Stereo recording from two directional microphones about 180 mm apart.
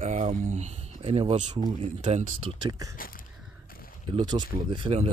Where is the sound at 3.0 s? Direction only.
50° left (ahead or behind).